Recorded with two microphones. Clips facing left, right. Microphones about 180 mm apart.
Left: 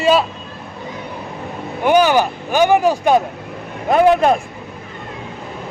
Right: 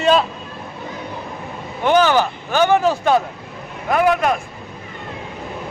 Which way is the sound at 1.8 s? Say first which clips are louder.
Left 2 dB; 10° left (ahead or behind).